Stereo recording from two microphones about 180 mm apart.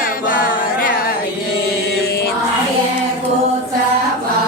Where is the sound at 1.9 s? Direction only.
60° left (ahead or behind).